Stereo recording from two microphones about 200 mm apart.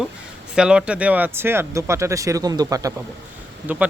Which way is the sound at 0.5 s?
5° right (ahead or behind).